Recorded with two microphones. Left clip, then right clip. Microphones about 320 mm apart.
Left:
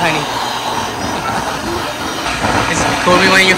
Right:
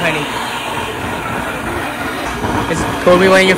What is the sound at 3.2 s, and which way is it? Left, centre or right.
Speech, centre.